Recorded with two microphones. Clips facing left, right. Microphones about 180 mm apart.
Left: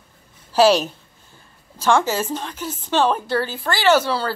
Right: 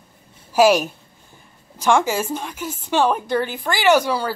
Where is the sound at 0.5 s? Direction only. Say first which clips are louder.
Even; 10° right (ahead or behind).